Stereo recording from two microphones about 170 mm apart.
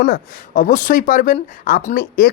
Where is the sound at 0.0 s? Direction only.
55° left (ahead or behind).